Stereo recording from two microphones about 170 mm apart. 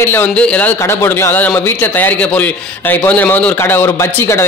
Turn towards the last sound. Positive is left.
turn(degrees=15)  # may be behind; listen again after turning